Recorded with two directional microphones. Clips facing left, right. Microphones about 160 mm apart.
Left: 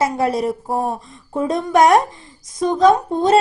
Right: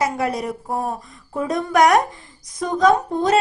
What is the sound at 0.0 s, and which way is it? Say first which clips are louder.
A woman's voice: left 4 dB; 30° left (ahead or behind).